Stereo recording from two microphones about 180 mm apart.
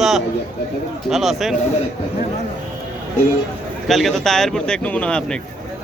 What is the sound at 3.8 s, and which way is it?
Speech, centre (ahead or behind).